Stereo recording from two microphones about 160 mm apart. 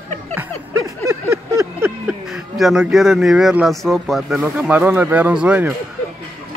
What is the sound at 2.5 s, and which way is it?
Speech, centre (ahead or behind).